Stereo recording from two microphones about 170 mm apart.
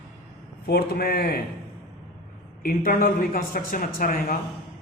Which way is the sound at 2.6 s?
60° left (ahead or behind).